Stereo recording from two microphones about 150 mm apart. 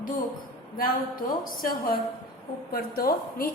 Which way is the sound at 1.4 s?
75° left (ahead or behind).